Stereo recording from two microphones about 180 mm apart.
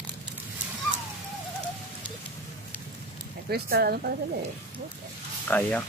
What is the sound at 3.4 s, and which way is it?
Speech, 60° right (ahead or behind).